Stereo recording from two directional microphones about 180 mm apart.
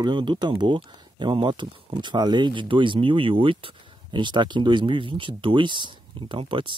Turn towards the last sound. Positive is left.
turn(degrees=-30)  # may be behind; listen again after turning